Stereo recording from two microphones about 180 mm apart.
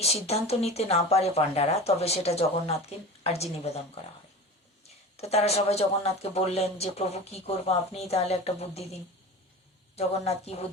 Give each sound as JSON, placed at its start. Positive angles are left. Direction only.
{"t": 0.0, "sound": "speech", "side_deg": 35}
{"t": 5.1, "sound": "speech", "side_deg": 35}